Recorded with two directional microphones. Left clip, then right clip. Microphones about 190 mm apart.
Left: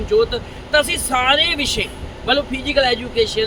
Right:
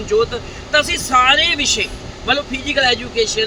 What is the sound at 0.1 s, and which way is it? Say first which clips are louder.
Speech: even; 20° left (ahead or behind).